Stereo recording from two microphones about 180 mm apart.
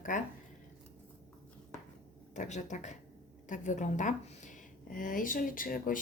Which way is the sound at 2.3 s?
40° left (ahead or behind).